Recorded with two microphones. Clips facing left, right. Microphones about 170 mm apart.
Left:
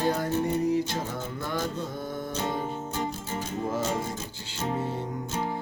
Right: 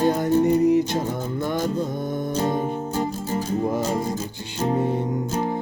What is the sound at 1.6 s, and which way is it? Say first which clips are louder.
Music: right 7 dB; 40° right (ahead or behind).